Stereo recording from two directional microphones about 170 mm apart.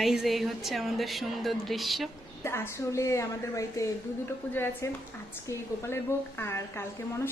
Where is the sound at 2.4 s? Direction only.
15° left (ahead or behind).